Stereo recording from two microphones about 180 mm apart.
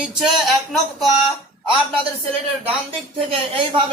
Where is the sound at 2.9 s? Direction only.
30° right (ahead or behind).